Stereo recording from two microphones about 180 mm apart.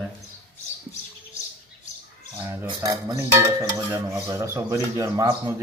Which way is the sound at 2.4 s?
15° right (ahead or behind).